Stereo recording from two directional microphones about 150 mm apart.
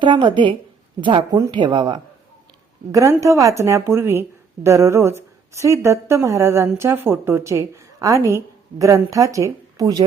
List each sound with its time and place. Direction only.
0.0 s speech: 30° right (ahead or behind)
2.9 s a woman's voice: 20° right (ahead or behind)